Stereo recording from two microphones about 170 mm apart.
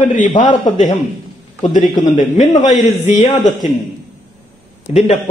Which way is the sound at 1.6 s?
50° left (ahead or behind).